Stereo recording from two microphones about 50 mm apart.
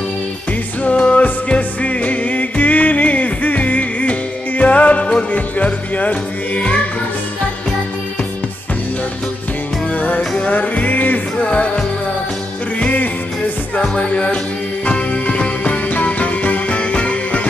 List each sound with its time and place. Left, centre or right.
0.8 s music: left
9.9 s music: left
11.4 s music: left
12.7 s music: left
13.7 s music: left